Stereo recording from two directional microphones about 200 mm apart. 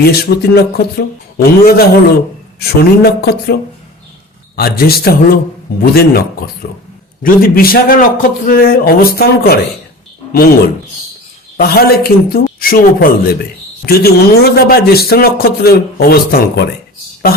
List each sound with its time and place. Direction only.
0.0 s a man's voice: 50° left (ahead or behind)
11.5 s a man's voice: 50° left (ahead or behind)